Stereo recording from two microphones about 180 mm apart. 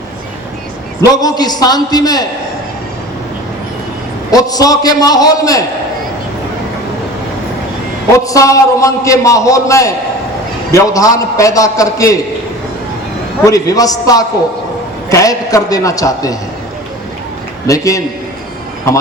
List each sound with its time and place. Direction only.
1.0 s a man's voice: 20° left (ahead or behind)
4.3 s a man's voice: 20° left (ahead or behind)
8.2 s a man's voice: 20° left (ahead or behind)
13.4 s a man's voice: 20° left (ahead or behind)
17.7 s a man's voice: 20° left (ahead or behind)